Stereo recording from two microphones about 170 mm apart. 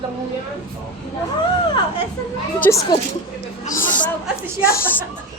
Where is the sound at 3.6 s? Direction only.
55° left (ahead or behind).